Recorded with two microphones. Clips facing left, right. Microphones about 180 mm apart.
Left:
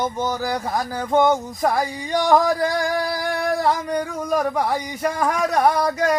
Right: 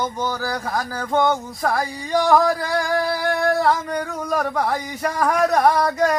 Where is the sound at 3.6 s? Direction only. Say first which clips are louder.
Right 1 dB; 15° left (ahead or behind).